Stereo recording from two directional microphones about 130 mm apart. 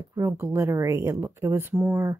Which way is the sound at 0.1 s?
20° right (ahead or behind).